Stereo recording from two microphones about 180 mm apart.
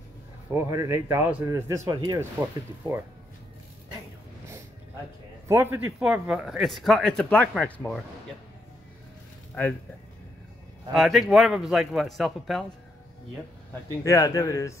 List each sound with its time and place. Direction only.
0.7 s speech: 15° right (ahead or behind)
5.5 s speech: 15° right (ahead or behind)
5.9 s speech: 5° right (ahead or behind)
10.9 s speech: centre (ahead or behind)
14.0 s a man's voice: 20° left (ahead or behind)